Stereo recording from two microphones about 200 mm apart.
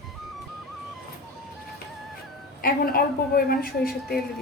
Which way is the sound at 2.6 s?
50° left (ahead or behind).